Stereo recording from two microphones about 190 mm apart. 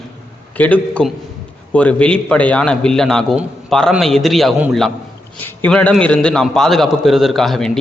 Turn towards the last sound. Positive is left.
turn(degrees=0)  # may be behind; listen again after turning